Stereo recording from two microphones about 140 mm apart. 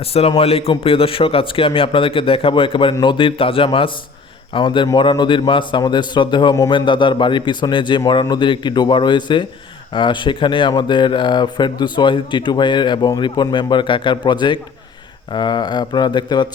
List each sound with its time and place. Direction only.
0.0 s a man's voice: 45° left (ahead or behind)